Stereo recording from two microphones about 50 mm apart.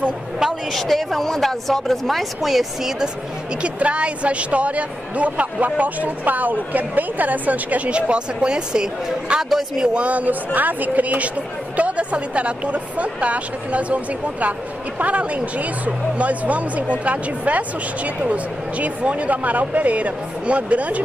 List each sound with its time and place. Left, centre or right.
0.4 s speech: centre
3.6 s speech: right
9.4 s speech: centre
9.9 s speech: right